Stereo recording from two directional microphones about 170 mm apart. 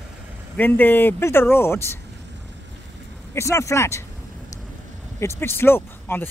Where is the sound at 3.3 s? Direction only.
15° left (ahead or behind).